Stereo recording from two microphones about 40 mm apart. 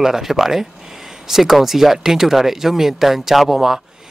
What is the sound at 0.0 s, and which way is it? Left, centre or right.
Speech, centre.